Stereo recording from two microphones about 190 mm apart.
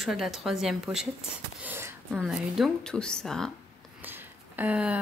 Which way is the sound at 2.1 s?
Centre (ahead or behind).